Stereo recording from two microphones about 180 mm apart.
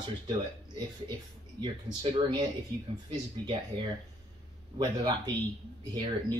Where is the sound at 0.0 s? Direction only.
25° right (ahead or behind).